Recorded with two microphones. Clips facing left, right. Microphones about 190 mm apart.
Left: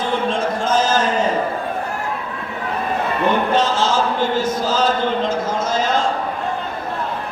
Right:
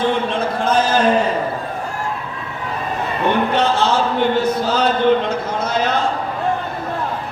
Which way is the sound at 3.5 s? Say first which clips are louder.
Right 1 dB; 65° right (ahead or behind).